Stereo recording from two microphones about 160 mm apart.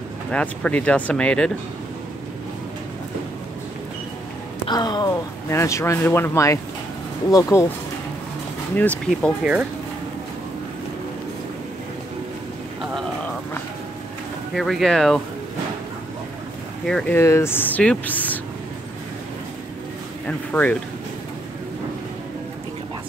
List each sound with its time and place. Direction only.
0.3 s speech: 5° left (ahead or behind)
4.6 s speech: 25° left (ahead or behind)
9.1 s speech: 5° right (ahead or behind)
14.5 s speech: centre (ahead or behind)
16.8 s speech: 5° left (ahead or behind)
20.2 s speech: 10° left (ahead or behind)